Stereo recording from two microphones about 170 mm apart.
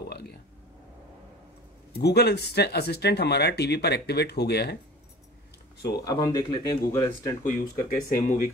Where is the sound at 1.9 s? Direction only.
75° left (ahead or behind).